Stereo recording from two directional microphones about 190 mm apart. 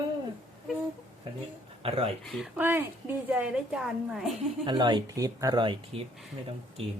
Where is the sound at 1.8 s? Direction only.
30° right (ahead or behind).